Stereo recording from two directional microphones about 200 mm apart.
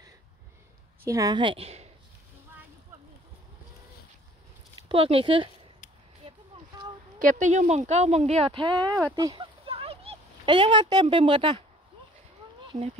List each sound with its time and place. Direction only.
1.0 s a woman's voice: 15° right (ahead or behind)
4.8 s a woman's voice: 25° right (ahead or behind)
7.2 s speech: 40° right (ahead or behind); by 8.9 s 20° right (ahead or behind)
9.1 s a sound: 20° right (ahead or behind)